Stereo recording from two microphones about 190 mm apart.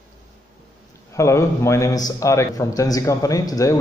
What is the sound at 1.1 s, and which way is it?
A man's voice, 15° left (ahead or behind).